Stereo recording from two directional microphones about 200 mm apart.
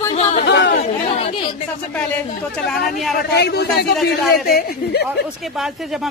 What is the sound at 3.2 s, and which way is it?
A man's voice, 55° left (ahead or behind).